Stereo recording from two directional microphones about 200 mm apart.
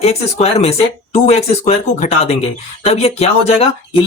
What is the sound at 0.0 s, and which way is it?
Speech, 30° left (ahead or behind).